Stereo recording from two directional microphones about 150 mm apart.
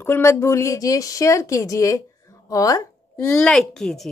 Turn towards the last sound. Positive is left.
turn(degrees=5)  # may be behind; listen again after turning